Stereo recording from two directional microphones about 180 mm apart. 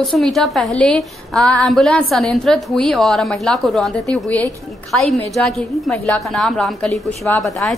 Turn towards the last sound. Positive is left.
turn(degrees=0)  # may be behind; listen again after turning